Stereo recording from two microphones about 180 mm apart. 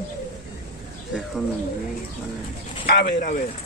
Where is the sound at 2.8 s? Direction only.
60° left (ahead or behind).